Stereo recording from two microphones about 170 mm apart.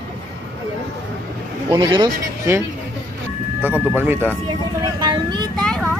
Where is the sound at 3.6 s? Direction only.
10° right (ahead or behind).